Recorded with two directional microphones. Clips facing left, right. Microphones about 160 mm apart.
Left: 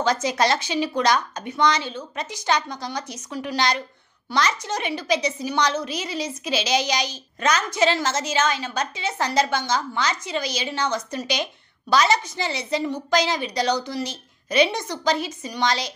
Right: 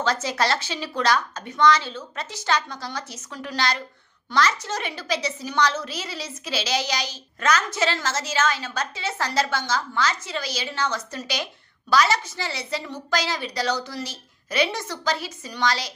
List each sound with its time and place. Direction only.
0.0 s a woman's voice: 15° left (ahead or behind)